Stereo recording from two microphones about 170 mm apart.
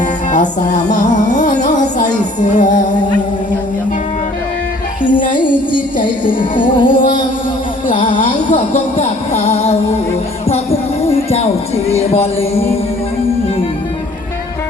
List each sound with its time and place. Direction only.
0.0 s music: 45° left (ahead or behind)
6.7 s music: 30° left (ahead or behind)
8.1 s music: 45° left (ahead or behind)
10.4 s a sound: 35° left (ahead or behind)
11.9 s music: 40° left (ahead or behind)